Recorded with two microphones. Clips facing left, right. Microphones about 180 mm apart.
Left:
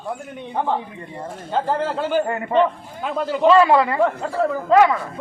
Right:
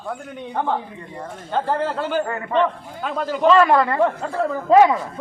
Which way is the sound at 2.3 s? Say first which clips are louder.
Left 3 dB; 25° left (ahead or behind).